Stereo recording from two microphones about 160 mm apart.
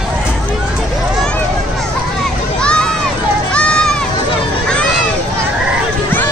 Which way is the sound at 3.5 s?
5° left (ahead or behind).